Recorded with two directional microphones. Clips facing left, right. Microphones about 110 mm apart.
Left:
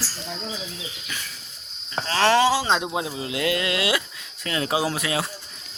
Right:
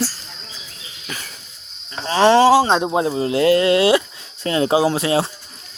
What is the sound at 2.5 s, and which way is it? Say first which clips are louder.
Speech: right 8 dB; 45° right (ahead or behind).